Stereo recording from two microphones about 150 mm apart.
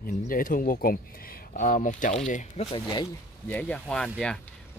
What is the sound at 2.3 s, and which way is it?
Speech, 50° left (ahead or behind).